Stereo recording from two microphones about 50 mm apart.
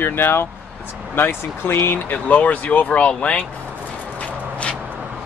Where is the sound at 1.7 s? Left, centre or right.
Left.